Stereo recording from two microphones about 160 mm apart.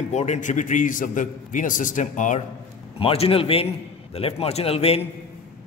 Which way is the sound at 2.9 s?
35° left (ahead or behind).